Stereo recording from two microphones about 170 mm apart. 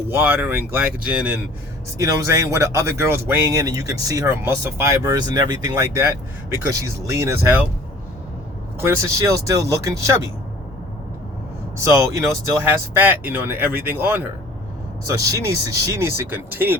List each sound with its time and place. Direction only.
0.1 s speech: 10° right (ahead or behind)
2.0 s speech: 20° right (ahead or behind)
8.8 s speech: 15° right (ahead or behind)
11.8 s speech: 15° right (ahead or behind)